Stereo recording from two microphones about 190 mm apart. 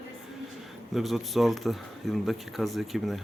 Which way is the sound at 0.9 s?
Centre (ahead or behind).